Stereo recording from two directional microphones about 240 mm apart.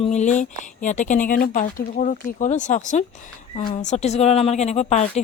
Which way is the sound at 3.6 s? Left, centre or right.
Left.